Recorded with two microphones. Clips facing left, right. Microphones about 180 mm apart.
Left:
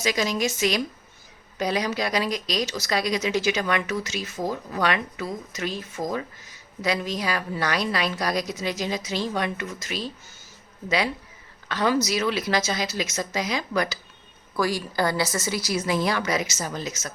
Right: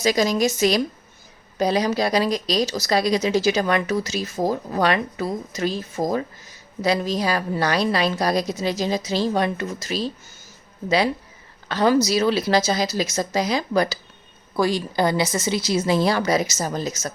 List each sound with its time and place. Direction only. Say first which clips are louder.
0.0 s a woman's voice: right 5 dB; 35° right (ahead or behind)